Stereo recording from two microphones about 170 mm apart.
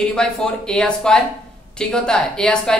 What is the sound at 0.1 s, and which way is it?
Speech, 5° left (ahead or behind).